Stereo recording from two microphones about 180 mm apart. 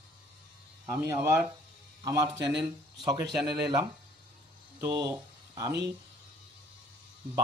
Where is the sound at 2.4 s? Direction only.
70° right (ahead or behind).